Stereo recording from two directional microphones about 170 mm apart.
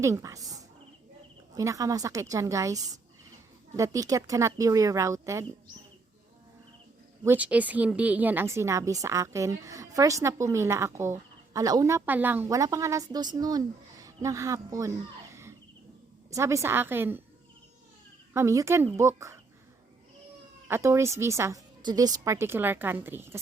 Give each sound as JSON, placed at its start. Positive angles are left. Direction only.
{"t": 0.0, "sound": "speech", "side_deg": -20}
{"t": 7.3, "sound": "a woman's voice", "side_deg": -10}
{"t": 18.3, "sound": "a woman's voice", "side_deg": -15}
{"t": 20.7, "sound": "a woman's voice", "side_deg": -15}